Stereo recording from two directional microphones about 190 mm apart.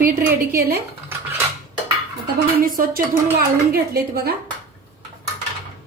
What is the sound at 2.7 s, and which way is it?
Speech, 45° right (ahead or behind).